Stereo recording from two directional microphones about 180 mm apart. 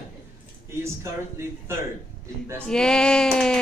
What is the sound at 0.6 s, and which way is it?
A man's voice, 15° right (ahead or behind).